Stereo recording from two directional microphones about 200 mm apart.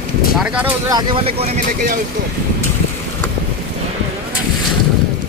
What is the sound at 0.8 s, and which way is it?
Speech, 20° right (ahead or behind).